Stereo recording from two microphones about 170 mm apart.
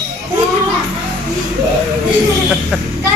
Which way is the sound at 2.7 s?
5° right (ahead or behind).